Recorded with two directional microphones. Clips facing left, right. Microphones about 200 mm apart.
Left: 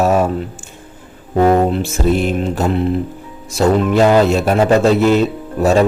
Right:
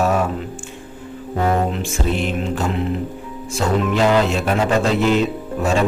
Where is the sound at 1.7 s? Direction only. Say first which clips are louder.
Left 6 dB; 40° left (ahead or behind).